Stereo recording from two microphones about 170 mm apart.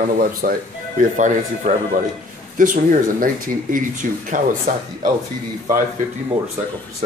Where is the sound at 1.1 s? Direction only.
45° right (ahead or behind).